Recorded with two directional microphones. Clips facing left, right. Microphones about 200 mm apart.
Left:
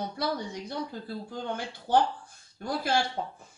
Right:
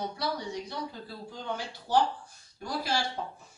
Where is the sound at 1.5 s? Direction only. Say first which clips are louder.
Left 2 dB; 55° left (ahead or behind).